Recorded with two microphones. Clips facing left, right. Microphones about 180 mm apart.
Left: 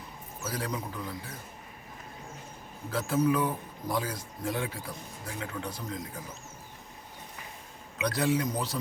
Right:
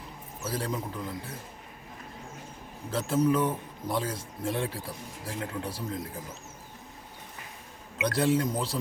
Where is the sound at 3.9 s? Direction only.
25° right (ahead or behind).